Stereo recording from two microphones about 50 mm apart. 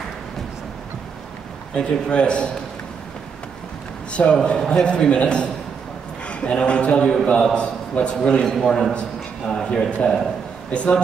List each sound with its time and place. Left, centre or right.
1.8 s a man's voice: left
4.1 s a man's voice: left
9.7 s a man's voice: centre